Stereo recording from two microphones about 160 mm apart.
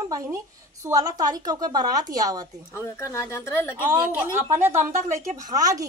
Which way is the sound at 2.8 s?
15° left (ahead or behind).